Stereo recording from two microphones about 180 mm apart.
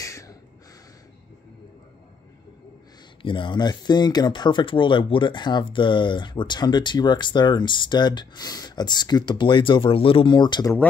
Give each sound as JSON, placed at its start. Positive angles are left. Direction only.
{"t": 0.0, "sound": "gasp", "side_deg": 15}
{"t": 3.2, "sound": "speech", "side_deg": 30}